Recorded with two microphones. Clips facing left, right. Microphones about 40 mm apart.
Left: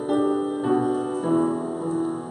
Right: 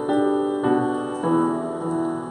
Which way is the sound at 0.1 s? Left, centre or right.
Centre.